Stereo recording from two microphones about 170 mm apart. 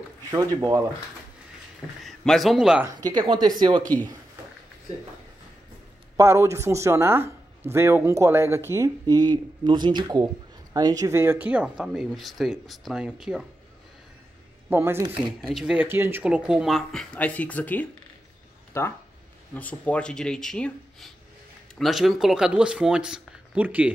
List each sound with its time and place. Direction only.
0.3 s speech: 20° right (ahead or behind)
2.0 s speech: centre (ahead or behind)
3.1 s speech: 25° right (ahead or behind)
6.1 s speech: 15° right (ahead or behind)
14.7 s speech: 15° right (ahead or behind)
15.4 s speech: centre (ahead or behind)